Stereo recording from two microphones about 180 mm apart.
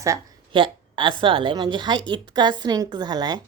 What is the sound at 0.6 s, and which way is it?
Speech, 25° right (ahead or behind).